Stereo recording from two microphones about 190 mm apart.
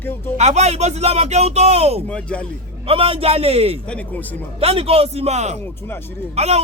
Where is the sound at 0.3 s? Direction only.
35° right (ahead or behind).